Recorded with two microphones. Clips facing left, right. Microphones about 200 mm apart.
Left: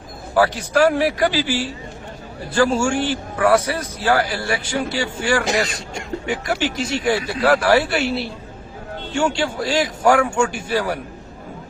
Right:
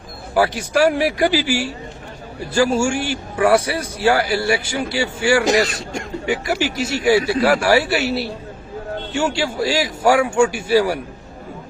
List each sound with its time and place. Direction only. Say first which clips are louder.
0.3 s a man's voice: even; 10° right (ahead or behind)